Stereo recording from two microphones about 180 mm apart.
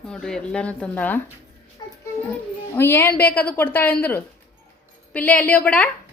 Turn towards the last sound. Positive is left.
turn(degrees=10)  # may be behind; listen again after turning